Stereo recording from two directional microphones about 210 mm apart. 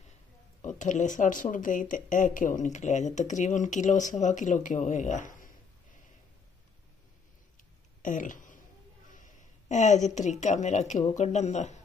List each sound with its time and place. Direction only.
0.6 s speech: 35° left (ahead or behind)
8.0 s a sound: 40° left (ahead or behind)
9.1 s a woman's voice: 35° left (ahead or behind)